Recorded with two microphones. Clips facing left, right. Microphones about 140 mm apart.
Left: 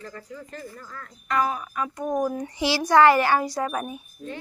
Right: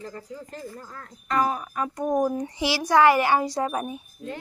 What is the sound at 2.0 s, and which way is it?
Speech, 20° right (ahead or behind).